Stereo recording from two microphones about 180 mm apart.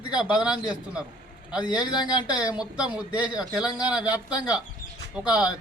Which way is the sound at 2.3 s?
5° right (ahead or behind).